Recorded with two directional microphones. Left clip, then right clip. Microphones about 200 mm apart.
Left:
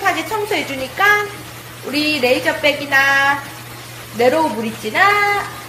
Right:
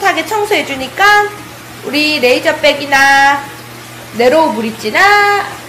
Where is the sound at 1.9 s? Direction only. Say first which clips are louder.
Right 5 dB; 20° right (ahead or behind).